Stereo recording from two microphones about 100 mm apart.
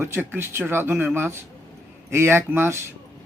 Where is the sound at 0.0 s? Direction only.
20° right (ahead or behind).